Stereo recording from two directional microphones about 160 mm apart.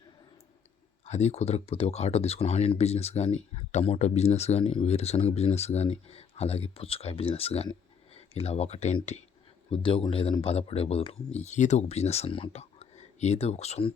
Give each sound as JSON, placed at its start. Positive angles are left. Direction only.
{"t": 1.0, "sound": "speech", "side_deg": 45}